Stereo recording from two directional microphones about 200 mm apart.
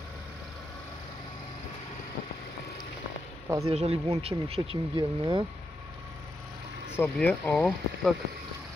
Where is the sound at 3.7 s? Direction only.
30° right (ahead or behind).